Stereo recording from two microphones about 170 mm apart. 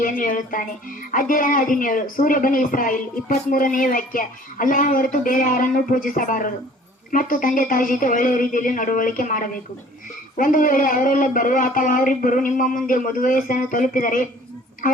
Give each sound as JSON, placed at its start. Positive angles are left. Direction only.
{"t": 0.0, "sound": "a woman's voice", "side_deg": 55}